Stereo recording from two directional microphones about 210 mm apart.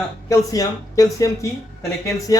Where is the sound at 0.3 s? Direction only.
15° left (ahead or behind).